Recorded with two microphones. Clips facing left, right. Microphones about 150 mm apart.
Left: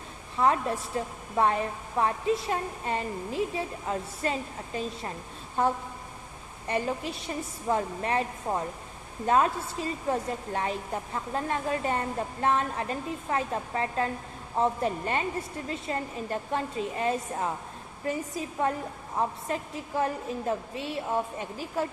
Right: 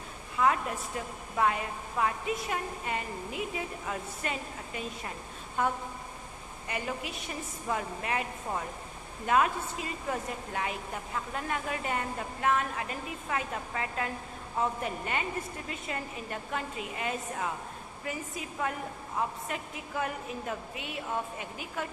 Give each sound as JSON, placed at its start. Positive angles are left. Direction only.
{"t": 0.3, "sound": "a woman's voice", "side_deg": 35}